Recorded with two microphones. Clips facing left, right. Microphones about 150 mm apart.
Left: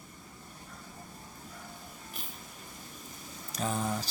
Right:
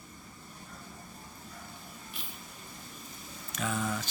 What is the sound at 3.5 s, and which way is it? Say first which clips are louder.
Speech: left 1 dB; 35° left (ahead or behind).